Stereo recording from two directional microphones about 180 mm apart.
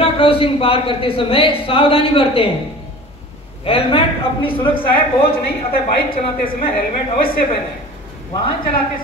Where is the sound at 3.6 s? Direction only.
30° left (ahead or behind).